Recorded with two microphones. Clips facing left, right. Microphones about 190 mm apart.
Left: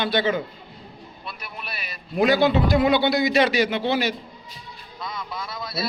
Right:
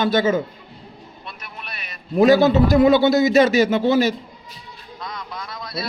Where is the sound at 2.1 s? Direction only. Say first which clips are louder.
Right 5 dB; 45° right (ahead or behind).